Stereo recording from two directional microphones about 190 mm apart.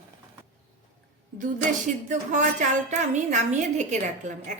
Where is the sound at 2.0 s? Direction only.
40° right (ahead or behind).